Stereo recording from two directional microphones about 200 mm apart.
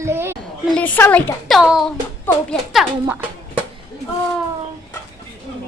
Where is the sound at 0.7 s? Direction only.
10° left (ahead or behind).